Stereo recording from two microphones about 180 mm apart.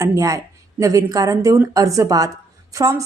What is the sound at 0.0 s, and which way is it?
A woman's voice, 20° right (ahead or behind).